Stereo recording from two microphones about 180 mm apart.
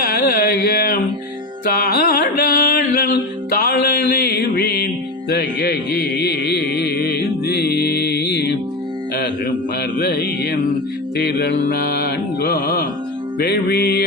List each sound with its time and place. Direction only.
0.0 s a sound: 55° left (ahead or behind)
3.6 s music: 55° left (ahead or behind)
10.0 s music: 65° left (ahead or behind)
11.2 s mantra: 65° left (ahead or behind)
12.4 s music: 60° left (ahead or behind)